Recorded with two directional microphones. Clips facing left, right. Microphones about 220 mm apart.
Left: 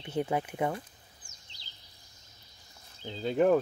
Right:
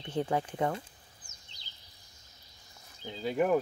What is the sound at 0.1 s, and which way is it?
Speech, 10° left (ahead or behind).